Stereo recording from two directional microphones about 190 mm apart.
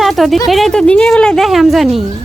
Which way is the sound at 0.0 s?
Centre (ahead or behind).